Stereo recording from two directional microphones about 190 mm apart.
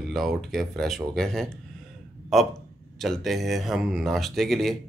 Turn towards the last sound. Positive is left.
turn(degrees=0)  # may be behind; listen again after turning